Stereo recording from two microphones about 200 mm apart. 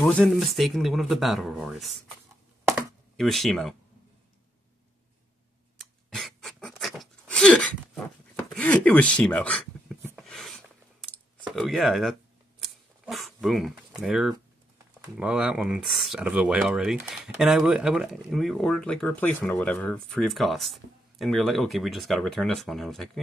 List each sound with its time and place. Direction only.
0.0 s speech: 5° left (ahead or behind)
3.2 s speech: centre (ahead or behind)
5.8 s pant: centre (ahead or behind)
8.5 s a sound: 5° left (ahead or behind)
15.1 s speech: 5° right (ahead or behind)